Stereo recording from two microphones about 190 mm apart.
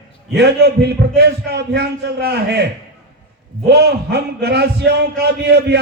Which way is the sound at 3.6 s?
60° right (ahead or behind).